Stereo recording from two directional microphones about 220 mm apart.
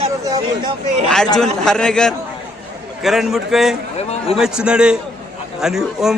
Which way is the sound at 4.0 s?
30° left (ahead or behind).